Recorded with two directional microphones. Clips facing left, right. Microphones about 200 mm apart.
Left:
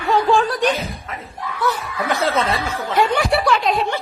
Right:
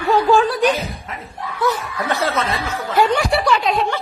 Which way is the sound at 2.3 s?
30° left (ahead or behind).